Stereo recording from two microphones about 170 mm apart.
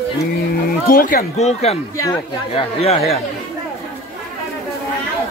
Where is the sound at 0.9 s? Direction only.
55° left (ahead or behind).